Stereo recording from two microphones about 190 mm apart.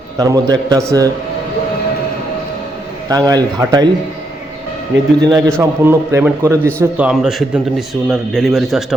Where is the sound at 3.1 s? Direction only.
20° right (ahead or behind).